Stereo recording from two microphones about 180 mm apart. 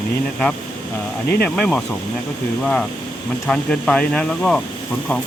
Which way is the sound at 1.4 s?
5° left (ahead or behind).